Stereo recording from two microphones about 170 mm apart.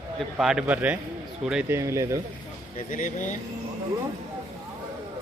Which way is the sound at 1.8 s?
20° right (ahead or behind).